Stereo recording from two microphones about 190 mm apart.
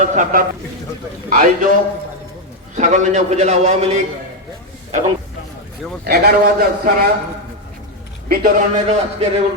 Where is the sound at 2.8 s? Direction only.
40° right (ahead or behind).